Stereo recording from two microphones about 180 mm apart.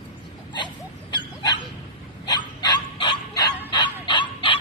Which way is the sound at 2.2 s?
25° left (ahead or behind).